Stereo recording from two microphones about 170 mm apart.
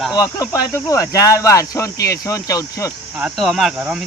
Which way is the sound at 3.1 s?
5° right (ahead or behind).